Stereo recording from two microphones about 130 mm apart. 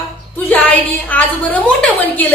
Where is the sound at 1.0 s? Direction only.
10° left (ahead or behind).